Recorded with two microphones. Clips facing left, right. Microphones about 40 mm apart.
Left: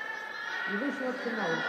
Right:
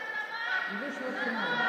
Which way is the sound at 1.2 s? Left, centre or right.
Right.